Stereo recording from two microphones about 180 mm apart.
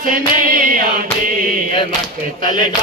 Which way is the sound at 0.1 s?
50° right (ahead or behind).